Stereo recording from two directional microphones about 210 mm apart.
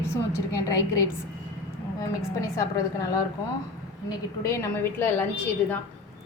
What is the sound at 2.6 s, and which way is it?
Speech, 15° left (ahead or behind).